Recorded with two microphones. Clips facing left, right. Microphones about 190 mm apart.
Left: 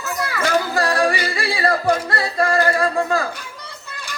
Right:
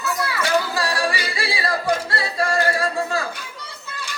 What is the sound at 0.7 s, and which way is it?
Music, 55° left (ahead or behind).